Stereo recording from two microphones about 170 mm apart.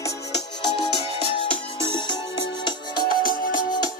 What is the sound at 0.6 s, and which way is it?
Music, 30° left (ahead or behind).